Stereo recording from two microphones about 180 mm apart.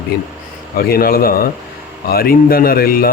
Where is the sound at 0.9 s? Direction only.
55° left (ahead or behind).